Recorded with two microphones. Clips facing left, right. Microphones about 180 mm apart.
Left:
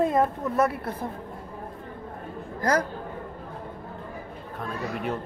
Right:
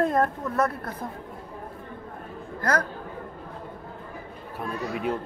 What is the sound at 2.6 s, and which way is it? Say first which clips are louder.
Speech: left 2 dB; 10° left (ahead or behind).